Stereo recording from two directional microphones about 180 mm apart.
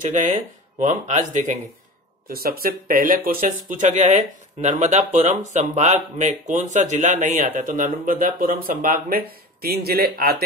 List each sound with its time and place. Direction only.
0.0 s speech: 40° right (ahead or behind)
2.2 s speech: 55° right (ahead or behind)